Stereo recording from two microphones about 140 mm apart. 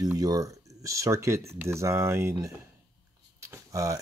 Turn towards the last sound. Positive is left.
turn(degrees=-20)  # may be behind; listen again after turning